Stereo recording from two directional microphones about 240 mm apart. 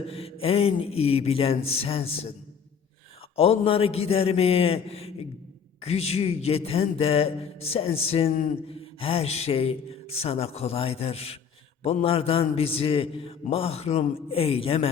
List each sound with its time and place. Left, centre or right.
0.1 s a man's voice: left
3.3 s a man's voice: left